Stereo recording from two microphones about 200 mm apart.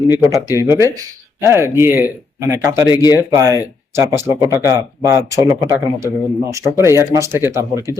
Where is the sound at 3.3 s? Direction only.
15° right (ahead or behind).